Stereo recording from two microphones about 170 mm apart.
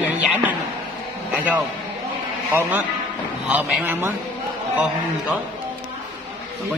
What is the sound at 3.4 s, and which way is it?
Speech, 10° right (ahead or behind).